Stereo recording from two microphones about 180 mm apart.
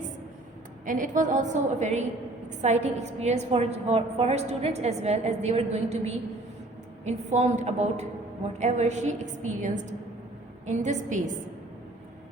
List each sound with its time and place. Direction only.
0.9 s a woman's voice: 45° right (ahead or behind)